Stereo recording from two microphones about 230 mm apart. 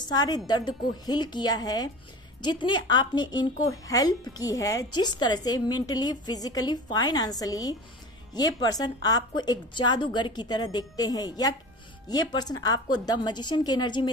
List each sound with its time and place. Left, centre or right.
0.1 s a woman's voice: centre